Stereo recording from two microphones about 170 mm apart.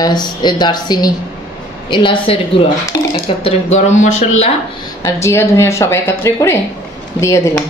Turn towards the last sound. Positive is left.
turn(degrees=15)  # may be behind; listen again after turning